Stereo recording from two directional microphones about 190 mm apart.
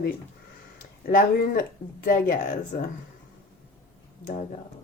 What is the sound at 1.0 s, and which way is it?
A woman's voice, 50° left (ahead or behind).